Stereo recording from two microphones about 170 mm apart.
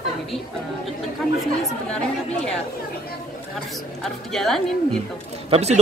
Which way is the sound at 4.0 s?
Centre (ahead or behind).